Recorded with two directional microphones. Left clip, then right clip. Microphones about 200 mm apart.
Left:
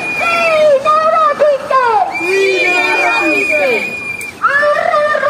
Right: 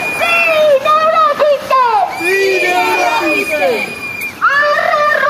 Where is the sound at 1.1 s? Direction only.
60° left (ahead or behind).